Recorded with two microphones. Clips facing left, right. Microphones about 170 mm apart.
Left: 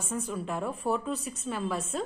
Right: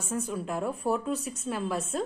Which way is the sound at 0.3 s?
5° right (ahead or behind).